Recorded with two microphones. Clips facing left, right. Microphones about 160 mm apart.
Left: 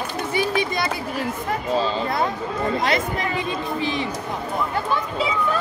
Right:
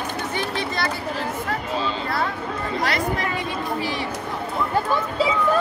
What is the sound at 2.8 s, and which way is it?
Chatter, 20° left (ahead or behind).